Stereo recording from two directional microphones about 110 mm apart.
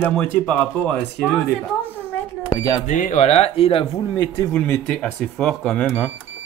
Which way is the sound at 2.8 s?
85° left.